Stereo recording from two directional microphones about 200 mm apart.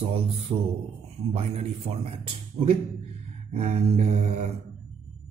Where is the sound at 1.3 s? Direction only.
30° right (ahead or behind).